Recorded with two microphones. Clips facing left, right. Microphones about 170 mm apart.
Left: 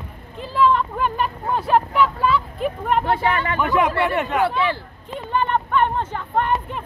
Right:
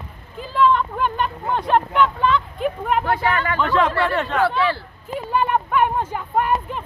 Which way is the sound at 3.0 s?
25° left (ahead or behind).